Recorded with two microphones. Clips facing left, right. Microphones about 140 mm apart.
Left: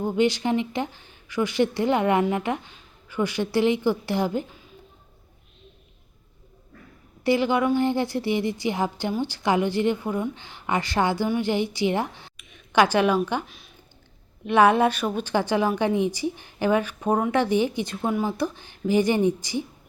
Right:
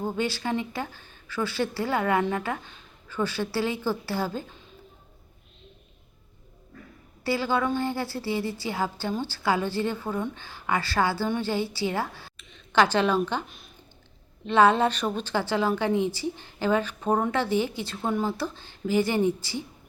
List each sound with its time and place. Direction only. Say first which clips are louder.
0.0 s a woman's voice: left 6 dB; 20° left (ahead or behind)
7.3 s a woman's voice: left 5 dB; 20° left (ahead or behind)
14.4 s a woman's voice: left 2 dB; 15° left (ahead or behind)